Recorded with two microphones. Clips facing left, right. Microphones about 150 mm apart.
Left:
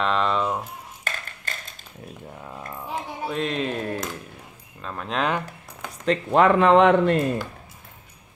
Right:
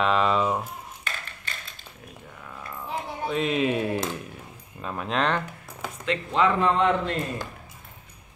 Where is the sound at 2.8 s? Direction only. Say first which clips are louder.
Even; centre (ahead or behind).